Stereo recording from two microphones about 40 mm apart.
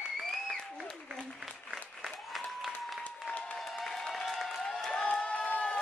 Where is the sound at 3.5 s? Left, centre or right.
Centre.